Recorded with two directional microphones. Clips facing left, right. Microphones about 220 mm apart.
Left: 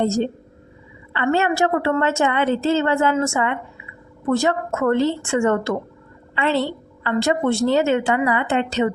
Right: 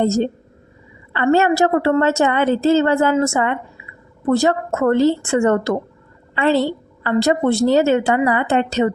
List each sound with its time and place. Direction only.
0.0 s a woman's voice: 40° right (ahead or behind)